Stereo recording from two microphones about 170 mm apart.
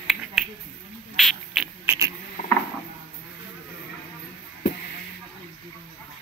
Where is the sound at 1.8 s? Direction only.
15° right (ahead or behind).